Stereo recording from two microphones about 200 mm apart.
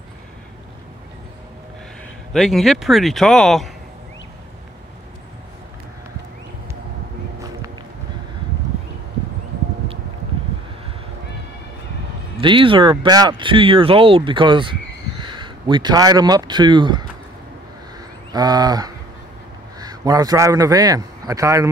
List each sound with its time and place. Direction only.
2.3 s speech: centre (ahead or behind)
12.4 s speech: 25° right (ahead or behind)
18.3 s a man's voice: 20° right (ahead or behind)